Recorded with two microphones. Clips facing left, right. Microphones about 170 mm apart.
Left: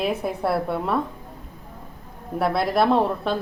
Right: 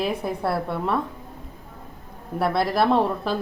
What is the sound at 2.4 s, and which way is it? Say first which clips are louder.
Speech: left 1 dB; centre (ahead or behind).